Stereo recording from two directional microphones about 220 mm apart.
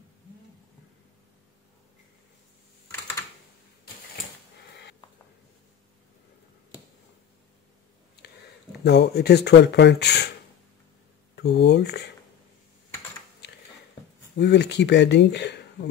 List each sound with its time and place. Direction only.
8.8 s speech: 50° left (ahead or behind)
11.3 s speech: 50° left (ahead or behind)
14.3 s speech: 50° left (ahead or behind)